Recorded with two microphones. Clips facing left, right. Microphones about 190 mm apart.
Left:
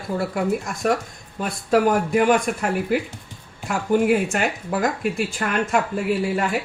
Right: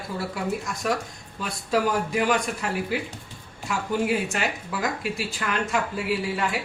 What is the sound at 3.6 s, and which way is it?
Speech, 55° left (ahead or behind).